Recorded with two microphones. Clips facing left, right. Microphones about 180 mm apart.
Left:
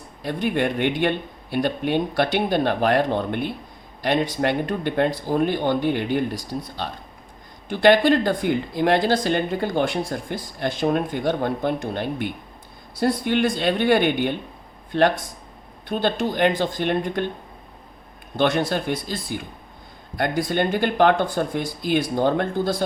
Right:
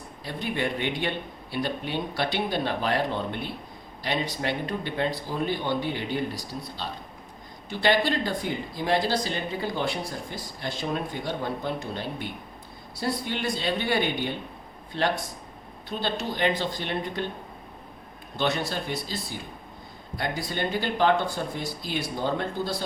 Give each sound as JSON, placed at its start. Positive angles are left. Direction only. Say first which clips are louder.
{"t": 0.2, "sound": "speech", "louder": "left 7 dB", "side_deg": 55}
{"t": 18.3, "sound": "speech", "louder": "left 7 dB", "side_deg": 50}